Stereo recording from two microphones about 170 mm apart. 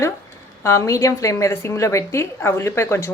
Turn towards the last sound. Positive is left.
turn(degrees=15)  # may be behind; listen again after turning